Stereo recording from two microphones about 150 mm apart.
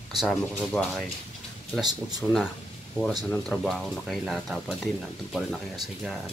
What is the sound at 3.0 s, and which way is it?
Speech, 15° right (ahead or behind).